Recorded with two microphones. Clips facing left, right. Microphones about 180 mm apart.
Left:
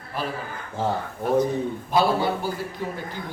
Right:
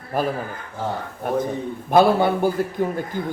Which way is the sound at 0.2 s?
45° right (ahead or behind).